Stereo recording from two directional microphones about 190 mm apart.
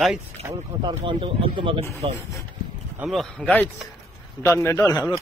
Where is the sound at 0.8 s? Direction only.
25° right (ahead or behind).